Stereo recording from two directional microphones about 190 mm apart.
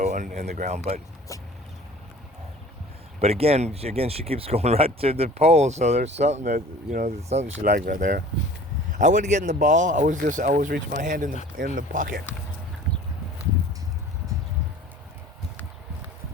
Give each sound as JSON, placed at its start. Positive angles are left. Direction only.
{"t": 0.0, "sound": "speech", "side_deg": -40}
{"t": 1.3, "sound": "vehicle", "side_deg": 15}
{"t": 3.2, "sound": "speech", "side_deg": -30}
{"t": 7.6, "sound": "speech", "side_deg": -45}